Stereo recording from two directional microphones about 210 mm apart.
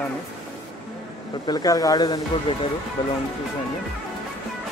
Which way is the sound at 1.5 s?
20° left (ahead or behind).